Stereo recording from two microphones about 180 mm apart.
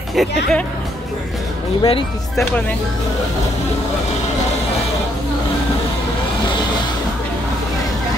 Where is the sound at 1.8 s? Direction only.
30° left (ahead or behind).